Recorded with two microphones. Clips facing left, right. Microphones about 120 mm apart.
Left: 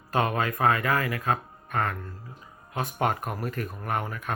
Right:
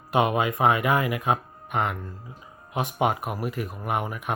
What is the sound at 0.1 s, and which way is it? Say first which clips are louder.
Speech: right 3 dB; 15° right (ahead or behind).